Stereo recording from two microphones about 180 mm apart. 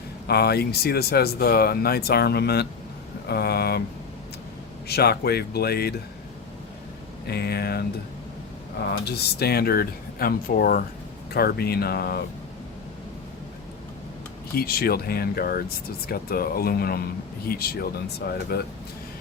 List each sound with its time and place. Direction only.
0.3 s speech: 60° left (ahead or behind)
4.9 s speech: 60° left (ahead or behind)
7.3 s speech: 60° left (ahead or behind)
8.9 s speech: 65° left (ahead or behind)
14.5 s speech: 55° left (ahead or behind)